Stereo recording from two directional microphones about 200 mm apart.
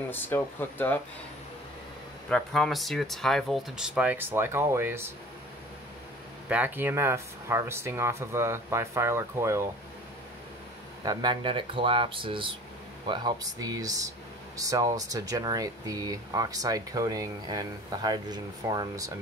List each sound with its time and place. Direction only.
0.1 s speech: 10° left (ahead or behind)
2.2 s speech: 5° left (ahead or behind); by 5.1 s 10° right (ahead or behind)
6.5 s speech: 10° right (ahead or behind)
11.1 s speech: 20° right (ahead or behind)